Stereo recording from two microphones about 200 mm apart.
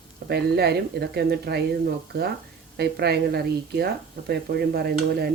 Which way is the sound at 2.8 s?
55° right (ahead or behind).